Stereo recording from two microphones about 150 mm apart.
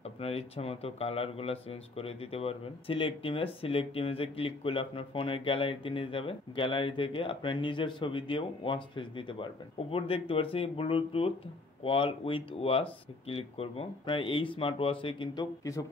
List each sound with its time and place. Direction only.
0.0 s speech: 40° left (ahead or behind); by 15.8 s 25° left (ahead or behind)